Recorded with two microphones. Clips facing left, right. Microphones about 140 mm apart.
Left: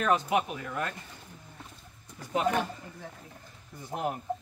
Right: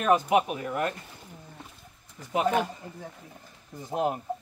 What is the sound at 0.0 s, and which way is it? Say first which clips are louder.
Speech: right 4 dB; 20° right (ahead or behind).